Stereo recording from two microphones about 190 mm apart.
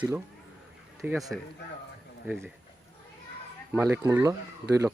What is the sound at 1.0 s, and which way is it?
Speech, 10° right (ahead or behind).